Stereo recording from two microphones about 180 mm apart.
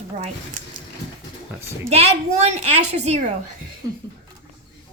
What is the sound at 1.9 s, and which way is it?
A woman's voice, 35° right (ahead or behind).